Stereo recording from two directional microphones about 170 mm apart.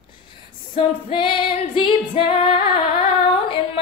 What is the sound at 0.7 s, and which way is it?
Female singing, 30° left (ahead or behind).